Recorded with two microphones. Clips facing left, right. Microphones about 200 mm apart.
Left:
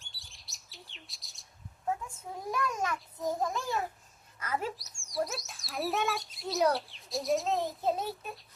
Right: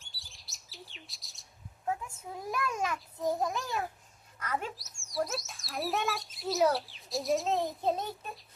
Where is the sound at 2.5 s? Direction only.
10° right (ahead or behind).